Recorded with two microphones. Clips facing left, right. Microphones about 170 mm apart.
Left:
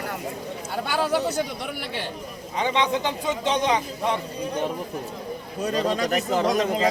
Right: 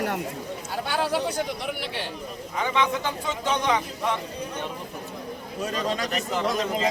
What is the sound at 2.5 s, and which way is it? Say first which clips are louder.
A man's voice: left 2 dB; 20° left (ahead or behind).